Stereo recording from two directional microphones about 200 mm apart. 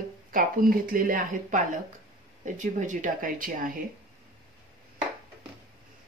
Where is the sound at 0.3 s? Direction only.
45° right (ahead or behind).